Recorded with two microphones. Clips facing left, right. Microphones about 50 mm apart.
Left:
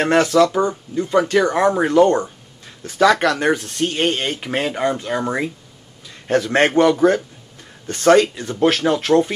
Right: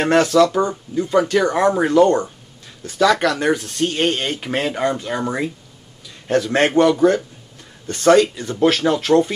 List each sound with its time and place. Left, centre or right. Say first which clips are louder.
0.1 s a man's voice: right 1 dB; left
1.5 s speech: even; centre
1.9 s a man's voice: even; centre
3.0 s a man's voice: left 1 dB; left
3.9 s speech: left 1 dB; centre
5.2 s a man's voice: even; left
9.1 s speech: even; centre